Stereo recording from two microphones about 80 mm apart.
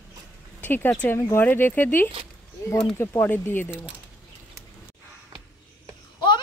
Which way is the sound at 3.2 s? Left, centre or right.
Left.